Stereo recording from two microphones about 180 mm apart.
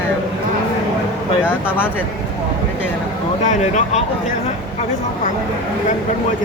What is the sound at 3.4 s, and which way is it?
Speech, 40° left (ahead or behind).